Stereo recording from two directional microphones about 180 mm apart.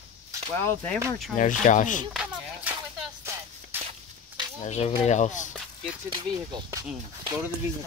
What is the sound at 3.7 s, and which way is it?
Walk, 10° right (ahead or behind).